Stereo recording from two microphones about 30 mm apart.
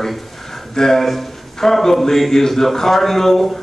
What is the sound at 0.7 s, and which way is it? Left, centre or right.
A man's voice, centre.